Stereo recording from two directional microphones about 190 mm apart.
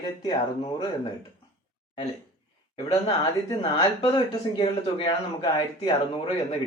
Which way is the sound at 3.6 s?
30° left (ahead or behind).